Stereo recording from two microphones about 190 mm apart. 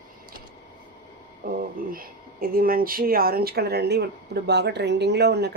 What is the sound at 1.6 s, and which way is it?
Speech, 50° right (ahead or behind).